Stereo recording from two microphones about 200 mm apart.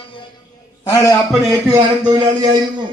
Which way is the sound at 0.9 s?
15° left (ahead or behind).